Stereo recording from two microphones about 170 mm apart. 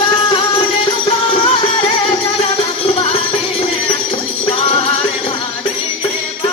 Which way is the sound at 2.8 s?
35° left (ahead or behind).